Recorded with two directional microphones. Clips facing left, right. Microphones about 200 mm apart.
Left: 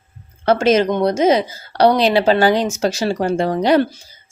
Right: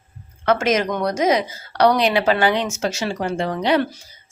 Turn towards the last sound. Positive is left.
turn(degrees=40)  # may be behind; listen again after turning